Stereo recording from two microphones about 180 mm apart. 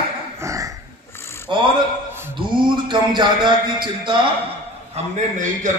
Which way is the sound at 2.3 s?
25° right (ahead or behind).